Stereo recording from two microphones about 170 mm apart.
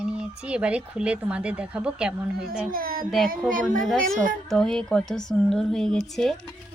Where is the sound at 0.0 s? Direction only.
5° right (ahead or behind).